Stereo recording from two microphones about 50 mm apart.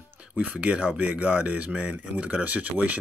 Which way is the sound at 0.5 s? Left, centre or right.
Right.